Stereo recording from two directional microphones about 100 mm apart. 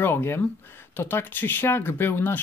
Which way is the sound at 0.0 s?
25° left (ahead or behind).